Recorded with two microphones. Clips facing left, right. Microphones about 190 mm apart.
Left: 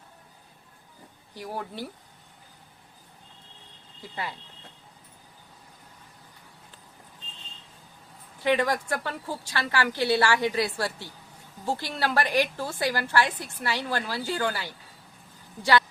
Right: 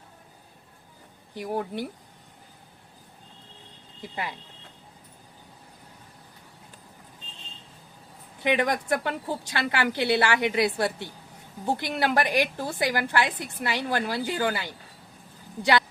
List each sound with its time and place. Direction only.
1.4 s a woman's voice: 20° right (ahead or behind)
4.1 s a woman's voice: 15° right (ahead or behind)
8.4 s a woman's voice: 20° right (ahead or behind)